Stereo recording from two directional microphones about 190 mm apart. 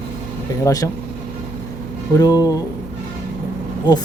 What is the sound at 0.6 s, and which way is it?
Speech, 20° left (ahead or behind).